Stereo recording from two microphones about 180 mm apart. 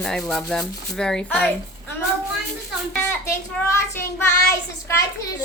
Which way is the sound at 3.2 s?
15° left (ahead or behind).